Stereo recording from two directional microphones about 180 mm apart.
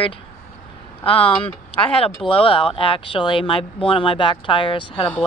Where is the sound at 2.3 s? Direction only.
30° left (ahead or behind).